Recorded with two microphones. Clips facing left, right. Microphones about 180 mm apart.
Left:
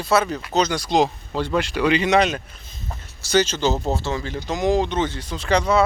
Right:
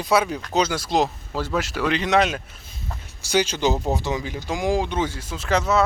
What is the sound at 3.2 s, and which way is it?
Speech, 10° right (ahead or behind).